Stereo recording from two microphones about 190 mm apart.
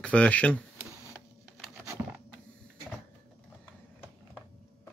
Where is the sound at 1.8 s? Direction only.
10° right (ahead or behind).